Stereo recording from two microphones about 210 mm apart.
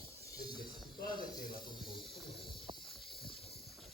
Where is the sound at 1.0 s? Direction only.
45° left (ahead or behind).